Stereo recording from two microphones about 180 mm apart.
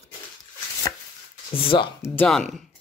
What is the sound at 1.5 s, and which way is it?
Speech, 30° left (ahead or behind).